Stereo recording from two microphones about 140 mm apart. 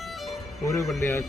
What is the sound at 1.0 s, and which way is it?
Speech, 20° left (ahead or behind).